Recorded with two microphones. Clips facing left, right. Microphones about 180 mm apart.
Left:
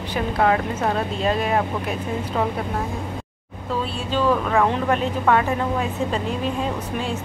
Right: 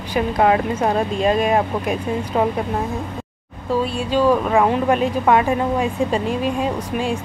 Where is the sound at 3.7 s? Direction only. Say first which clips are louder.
Right 5 dB; 10° right (ahead or behind).